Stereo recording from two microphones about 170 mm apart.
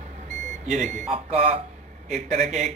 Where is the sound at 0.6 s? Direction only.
45° right (ahead or behind).